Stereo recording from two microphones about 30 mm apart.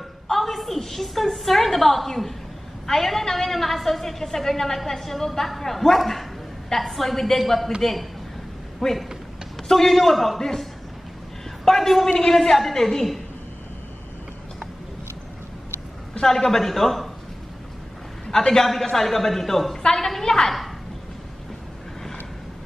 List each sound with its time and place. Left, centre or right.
0.3 s a sound: centre
0.6 s a woman's voice: centre
8.8 s a woman's voice: centre
16.2 s a woman's voice: centre
18.2 s a man's voice: left
18.9 s a woman's voice: centre